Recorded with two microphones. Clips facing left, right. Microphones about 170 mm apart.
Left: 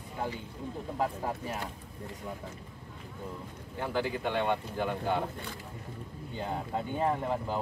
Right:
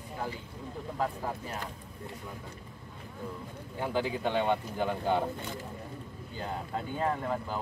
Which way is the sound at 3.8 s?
10° right (ahead or behind).